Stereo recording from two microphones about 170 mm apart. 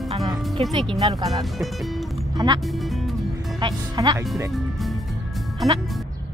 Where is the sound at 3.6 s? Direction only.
25° right (ahead or behind).